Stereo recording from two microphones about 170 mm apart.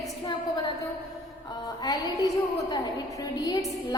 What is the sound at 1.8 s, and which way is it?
A woman's voice, 20° left (ahead or behind).